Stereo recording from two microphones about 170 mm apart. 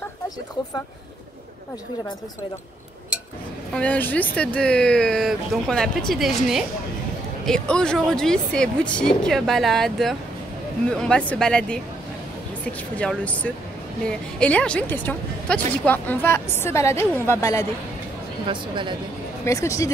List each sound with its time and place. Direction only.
3.7 s a woman's voice: 10° left (ahead or behind)
18.5 s speech: 30° right (ahead or behind)
19.4 s a woman's voice: 15° left (ahead or behind)